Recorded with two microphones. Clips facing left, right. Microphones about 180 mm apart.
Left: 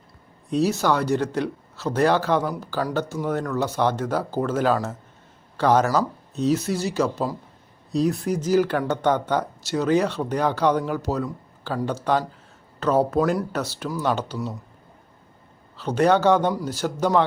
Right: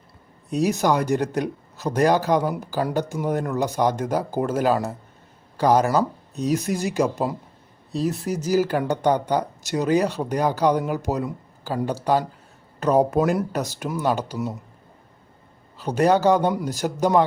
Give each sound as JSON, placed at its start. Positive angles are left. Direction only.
{"t": 0.5, "sound": "speech", "side_deg": -15}
{"t": 7.9, "sound": "speech", "side_deg": 0}
{"t": 15.8, "sound": "speech", "side_deg": -10}